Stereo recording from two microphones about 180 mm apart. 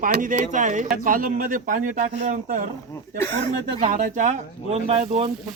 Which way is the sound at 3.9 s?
40° right (ahead or behind).